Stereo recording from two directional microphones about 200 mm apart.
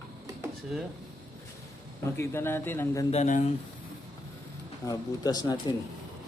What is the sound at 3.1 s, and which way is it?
Speech, 35° left (ahead or behind).